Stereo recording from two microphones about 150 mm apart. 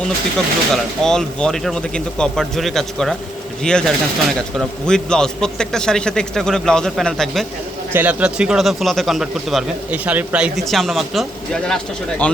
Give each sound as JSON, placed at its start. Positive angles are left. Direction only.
{"t": 0.3, "sound": "speech", "side_deg": 5}
{"t": 7.9, "sound": "speech", "side_deg": -10}